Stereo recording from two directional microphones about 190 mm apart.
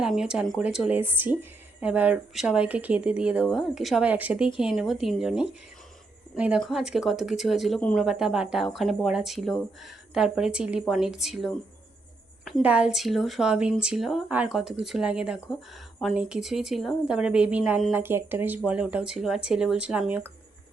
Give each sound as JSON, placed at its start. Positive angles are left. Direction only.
{"t": 0.0, "sound": "a woman's voice", "side_deg": -5}